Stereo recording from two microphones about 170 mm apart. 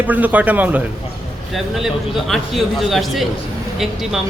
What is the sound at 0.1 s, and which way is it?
Speech, 10° right (ahead or behind).